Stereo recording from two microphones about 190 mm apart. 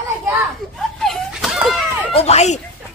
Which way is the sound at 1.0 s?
Centre (ahead or behind).